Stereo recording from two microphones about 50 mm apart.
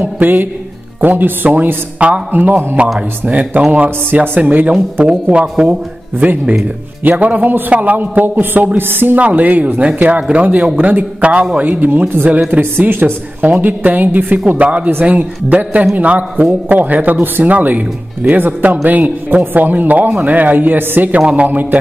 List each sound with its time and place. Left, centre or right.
0.0 s a woman's voice: right
4.1 s a woman's voice: right
4.4 s a man's voice: right
9.3 s a woman's voice: right
12.3 s a woman's voice: right